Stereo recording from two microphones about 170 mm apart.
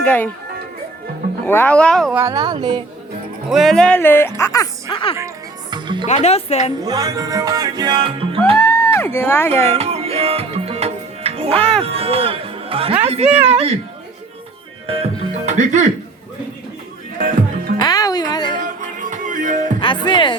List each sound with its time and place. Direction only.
0.0 s speech: 10° left (ahead or behind)
1.5 s a woman's voice: 10° left (ahead or behind)
2.1 s music: 20° right (ahead or behind)
3.5 s a woman's voice: centre (ahead or behind); by 5.1 s 25° left (ahead or behind)
5.7 s music: 25° right (ahead or behind)
6.1 s speech: 40° left (ahead or behind)
6.8 s music: 20° right (ahead or behind)
8.5 s speech: 15° left (ahead or behind)
9.6 s music: 35° right (ahead or behind)
11.8 s a woman's voice: 35° right (ahead or behind)
14.8 s music: 40° right (ahead or behind)
17.8 s music: 20° left (ahead or behind)
18.6 s music: 50° right (ahead or behind)
19.8 s speech: 30° left (ahead or behind)